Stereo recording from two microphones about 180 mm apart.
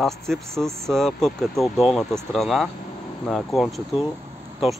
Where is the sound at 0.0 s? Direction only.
Centre (ahead or behind).